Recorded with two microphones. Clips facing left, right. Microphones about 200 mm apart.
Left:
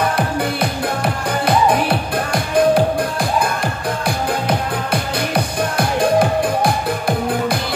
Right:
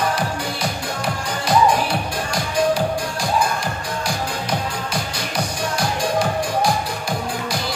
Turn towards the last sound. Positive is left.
turn(degrees=55)  # may be behind; listen again after turning